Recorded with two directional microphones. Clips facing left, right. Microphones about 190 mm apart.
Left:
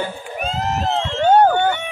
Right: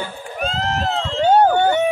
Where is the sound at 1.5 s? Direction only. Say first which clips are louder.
Right 3 dB; 35° right (ahead or behind).